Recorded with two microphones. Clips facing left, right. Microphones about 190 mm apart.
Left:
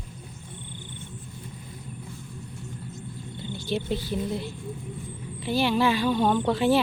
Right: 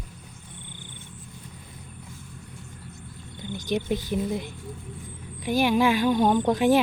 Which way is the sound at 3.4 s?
15° right (ahead or behind).